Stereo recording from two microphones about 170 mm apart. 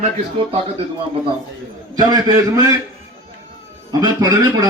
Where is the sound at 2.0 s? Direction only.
25° right (ahead or behind).